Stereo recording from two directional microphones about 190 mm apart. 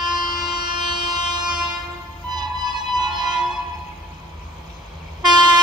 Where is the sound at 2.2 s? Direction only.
20° right (ahead or behind).